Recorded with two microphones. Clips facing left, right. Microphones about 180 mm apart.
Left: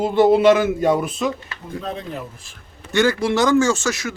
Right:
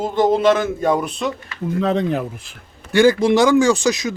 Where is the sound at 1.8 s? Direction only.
80° right.